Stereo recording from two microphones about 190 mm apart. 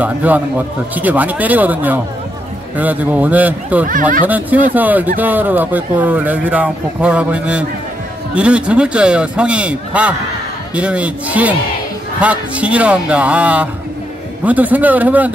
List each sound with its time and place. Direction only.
0.0 s speech: 10° right (ahead or behind)
3.8 s speech: 45° right (ahead or behind)
4.3 s a man's voice: 10° right (ahead or behind)